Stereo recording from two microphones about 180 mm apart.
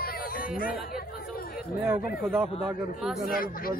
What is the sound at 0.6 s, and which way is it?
Chatter, 55° left (ahead or behind).